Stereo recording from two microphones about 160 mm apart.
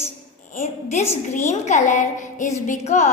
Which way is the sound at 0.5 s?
45° left (ahead or behind).